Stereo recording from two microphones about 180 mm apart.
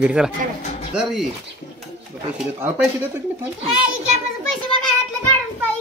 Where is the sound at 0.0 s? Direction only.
5° right (ahead or behind).